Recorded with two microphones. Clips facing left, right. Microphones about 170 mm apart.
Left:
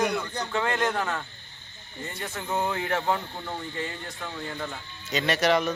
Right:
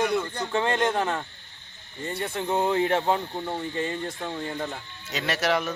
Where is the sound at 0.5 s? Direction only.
25° right (ahead or behind).